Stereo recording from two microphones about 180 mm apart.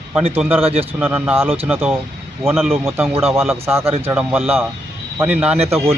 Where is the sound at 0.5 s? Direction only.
35° right (ahead or behind).